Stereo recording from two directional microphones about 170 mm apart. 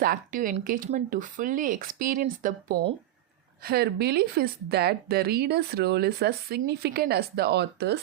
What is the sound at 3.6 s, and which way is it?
Speech, 65° right (ahead or behind).